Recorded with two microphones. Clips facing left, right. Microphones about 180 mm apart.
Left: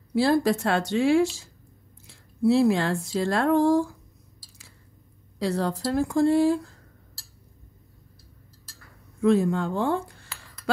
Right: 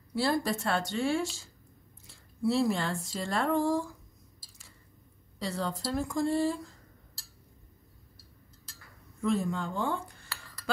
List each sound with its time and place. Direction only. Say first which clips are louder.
0.1 s speech: left 8 dB; 65° left (ahead or behind)
5.4 s speech: left 8 dB; 75° left (ahead or behind)
9.2 s speech: left 9 dB; 70° left (ahead or behind)